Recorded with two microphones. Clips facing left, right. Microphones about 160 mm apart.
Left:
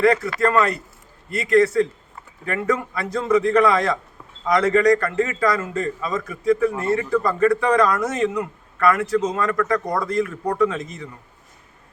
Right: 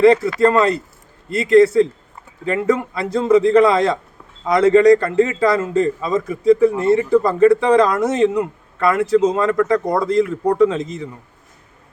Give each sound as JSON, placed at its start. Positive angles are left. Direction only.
{"t": 0.0, "sound": "a man's voice", "side_deg": -25}